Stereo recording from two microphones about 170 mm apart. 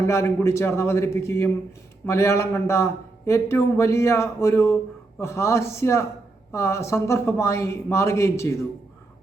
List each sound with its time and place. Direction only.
0.0 s a man's voice: 15° left (ahead or behind)